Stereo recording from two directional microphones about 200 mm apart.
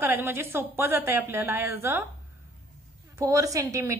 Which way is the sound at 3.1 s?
15° right (ahead or behind).